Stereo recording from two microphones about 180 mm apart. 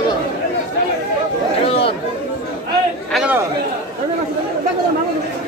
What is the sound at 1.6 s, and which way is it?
Speech, 35° left (ahead or behind).